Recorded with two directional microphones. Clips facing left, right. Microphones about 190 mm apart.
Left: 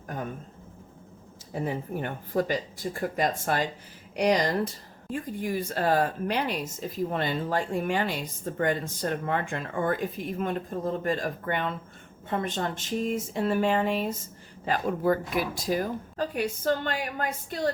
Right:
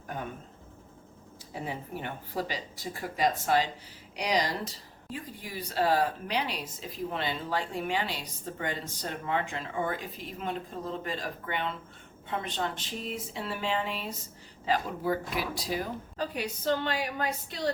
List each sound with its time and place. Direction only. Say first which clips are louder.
1.5 s speech: left 6 dB; 50° left (ahead or behind)